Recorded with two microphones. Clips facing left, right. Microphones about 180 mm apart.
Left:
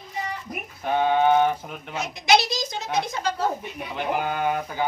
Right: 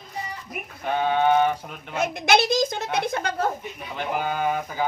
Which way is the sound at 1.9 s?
55° right (ahead or behind).